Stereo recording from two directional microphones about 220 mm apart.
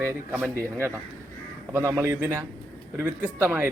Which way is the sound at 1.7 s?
10° right (ahead or behind).